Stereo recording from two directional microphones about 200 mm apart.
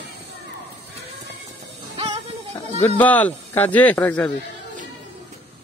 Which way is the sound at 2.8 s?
10° left (ahead or behind).